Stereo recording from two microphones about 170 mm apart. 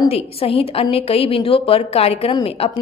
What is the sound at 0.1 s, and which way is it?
A woman's voice, 35° left (ahead or behind).